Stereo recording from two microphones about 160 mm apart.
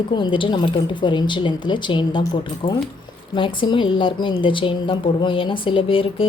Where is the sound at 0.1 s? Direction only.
30° left (ahead or behind).